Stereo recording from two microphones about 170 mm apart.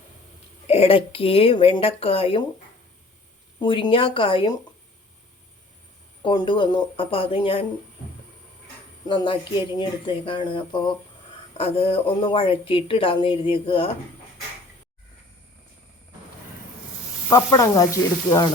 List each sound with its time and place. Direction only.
0.7 s speech: 35° left (ahead or behind)
3.6 s speech: 30° left (ahead or behind)
6.2 s speech: 30° left (ahead or behind)
9.0 s speech: 30° left (ahead or behind)
17.2 s speech: 20° left (ahead or behind)